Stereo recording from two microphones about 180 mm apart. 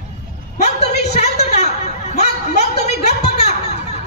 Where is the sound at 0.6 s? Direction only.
40° left (ahead or behind).